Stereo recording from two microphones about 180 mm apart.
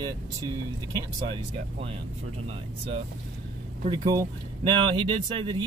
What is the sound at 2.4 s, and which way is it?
Speech, 30° right (ahead or behind).